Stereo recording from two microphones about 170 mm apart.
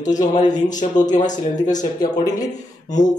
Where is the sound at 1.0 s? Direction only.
45° left (ahead or behind).